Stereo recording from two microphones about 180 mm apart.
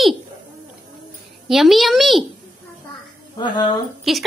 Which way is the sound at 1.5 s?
Centre (ahead or behind).